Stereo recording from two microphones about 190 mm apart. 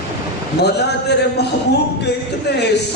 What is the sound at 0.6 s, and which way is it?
Speech, 60° left (ahead or behind).